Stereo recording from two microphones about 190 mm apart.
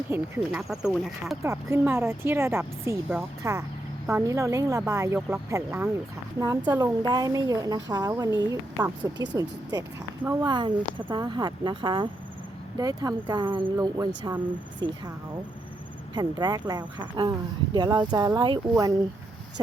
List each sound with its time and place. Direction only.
0.1 s speech: 5° right (ahead or behind)
1.4 s speech: 15° right (ahead or behind)
16.1 s speech: 20° right (ahead or behind)